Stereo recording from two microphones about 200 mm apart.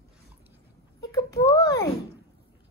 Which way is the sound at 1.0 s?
15° left (ahead or behind).